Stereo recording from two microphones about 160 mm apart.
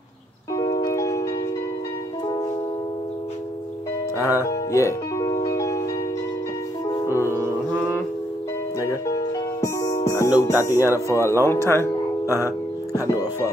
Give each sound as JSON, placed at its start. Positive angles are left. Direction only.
{"t": 0.6, "sound": "music", "side_deg": 20}
{"t": 4.4, "sound": "music", "side_deg": 20}
{"t": 7.1, "sound": "music", "side_deg": 15}
{"t": 9.6, "sound": "music", "side_deg": 20}
{"t": 10.7, "sound": "speech", "side_deg": -15}
{"t": 11.1, "sound": "speech", "side_deg": 15}